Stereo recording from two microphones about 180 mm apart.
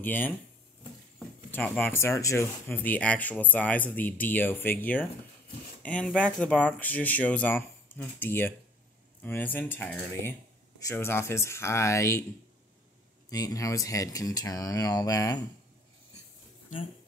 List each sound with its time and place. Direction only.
0.0 s speech: 10° left (ahead or behind)
1.5 s speech: 10° left (ahead or behind)
13.3 s speech: 20° left (ahead or behind)